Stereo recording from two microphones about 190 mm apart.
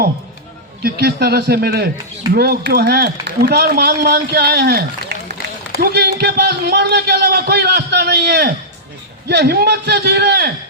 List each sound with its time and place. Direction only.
0.8 s a man's voice: 55° right (ahead or behind)